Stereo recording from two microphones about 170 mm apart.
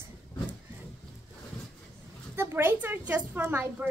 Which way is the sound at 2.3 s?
15° right (ahead or behind).